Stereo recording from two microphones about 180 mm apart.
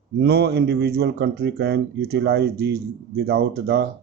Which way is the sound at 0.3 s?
65° right (ahead or behind).